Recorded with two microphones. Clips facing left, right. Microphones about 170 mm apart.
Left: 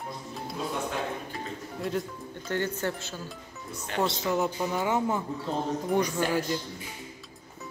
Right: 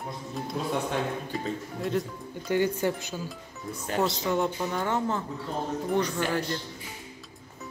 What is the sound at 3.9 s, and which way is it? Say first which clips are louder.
Speech: right 1 dB; centre (ahead or behind).